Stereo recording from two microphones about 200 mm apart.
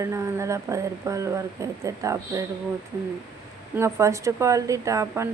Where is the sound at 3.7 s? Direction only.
15° right (ahead or behind).